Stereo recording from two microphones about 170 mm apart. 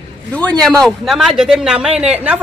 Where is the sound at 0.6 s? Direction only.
5° left (ahead or behind).